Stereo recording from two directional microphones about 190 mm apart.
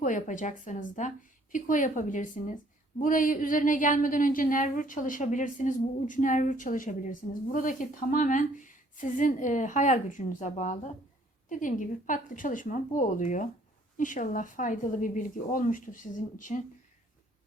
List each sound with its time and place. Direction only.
0.0 s a woman's voice: 40° left (ahead or behind)